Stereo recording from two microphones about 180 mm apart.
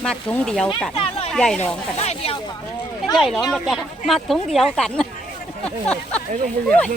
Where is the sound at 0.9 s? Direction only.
30° left (ahead or behind).